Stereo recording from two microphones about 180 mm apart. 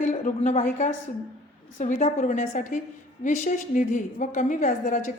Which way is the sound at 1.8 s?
45° left (ahead or behind).